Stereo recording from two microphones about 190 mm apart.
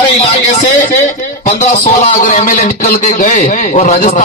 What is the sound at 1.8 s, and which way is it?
A man's voice, 40° left (ahead or behind).